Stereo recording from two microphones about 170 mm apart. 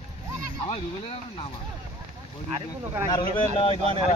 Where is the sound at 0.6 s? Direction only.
35° left (ahead or behind).